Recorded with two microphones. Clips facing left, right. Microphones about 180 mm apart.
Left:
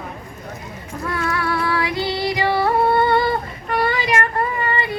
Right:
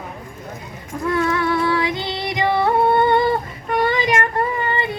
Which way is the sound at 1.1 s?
20° right (ahead or behind).